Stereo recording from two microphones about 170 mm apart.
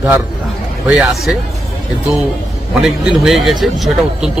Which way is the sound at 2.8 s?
5° right (ahead or behind).